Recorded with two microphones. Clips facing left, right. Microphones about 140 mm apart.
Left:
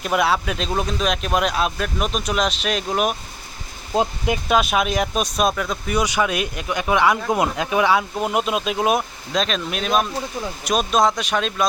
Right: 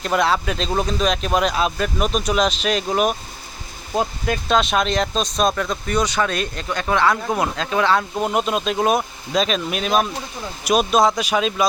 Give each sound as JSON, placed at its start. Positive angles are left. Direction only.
{"t": 0.0, "sound": "speech", "side_deg": 5}
{"t": 3.9, "sound": "speech", "side_deg": 15}
{"t": 8.1, "sound": "speech", "side_deg": 0}